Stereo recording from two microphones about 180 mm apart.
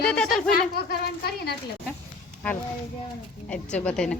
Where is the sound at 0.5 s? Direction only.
60° left (ahead or behind).